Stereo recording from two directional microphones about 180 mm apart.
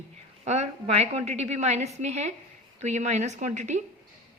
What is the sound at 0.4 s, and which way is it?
A woman's voice, 40° right (ahead or behind).